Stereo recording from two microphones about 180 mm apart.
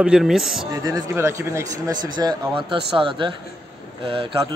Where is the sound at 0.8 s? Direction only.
20° right (ahead or behind).